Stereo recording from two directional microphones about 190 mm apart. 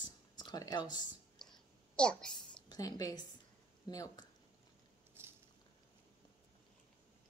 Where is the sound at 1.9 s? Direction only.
5° left (ahead or behind).